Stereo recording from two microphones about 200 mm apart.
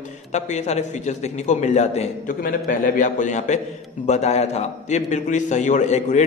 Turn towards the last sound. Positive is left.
turn(degrees=35)  # may be behind; listen again after turning